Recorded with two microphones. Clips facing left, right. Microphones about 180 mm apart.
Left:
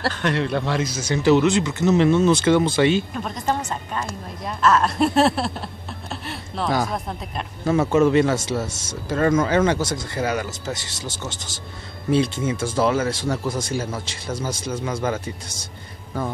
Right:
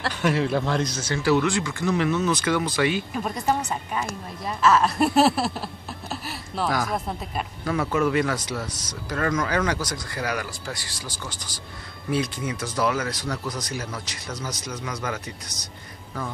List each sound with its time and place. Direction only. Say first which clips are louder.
0.1 s speech: even; 5° right (ahead or behind); by 3.0 s 25° left (ahead or behind)
3.1 s a woman's voice: even; 5° right (ahead or behind)
7.6 s speech: left 6 dB; 25° left (ahead or behind)